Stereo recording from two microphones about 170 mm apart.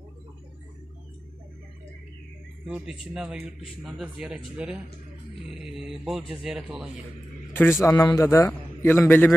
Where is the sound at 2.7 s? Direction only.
5° right (ahead or behind).